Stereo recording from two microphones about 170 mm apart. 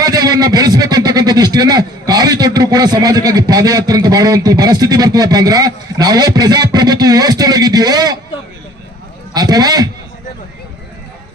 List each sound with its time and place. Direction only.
0.0 s speech: 25° right (ahead or behind)
9.3 s speech: 25° right (ahead or behind)